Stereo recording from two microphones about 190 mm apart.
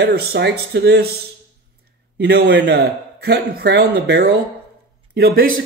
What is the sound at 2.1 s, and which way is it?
Speech, 60° right (ahead or behind).